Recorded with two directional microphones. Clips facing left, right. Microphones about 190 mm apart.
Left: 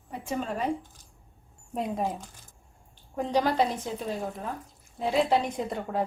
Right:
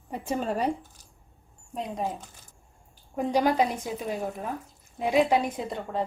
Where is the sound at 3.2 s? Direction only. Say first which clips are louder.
Right 2 dB; 10° right (ahead or behind).